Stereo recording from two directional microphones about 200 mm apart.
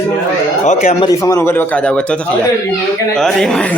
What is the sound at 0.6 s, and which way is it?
Speech, 35° left (ahead or behind).